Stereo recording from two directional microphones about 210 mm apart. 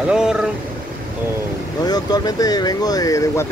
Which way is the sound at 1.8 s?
20° left (ahead or behind).